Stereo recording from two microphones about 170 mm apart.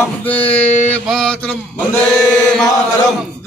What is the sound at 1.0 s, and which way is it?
Speech, centre (ahead or behind).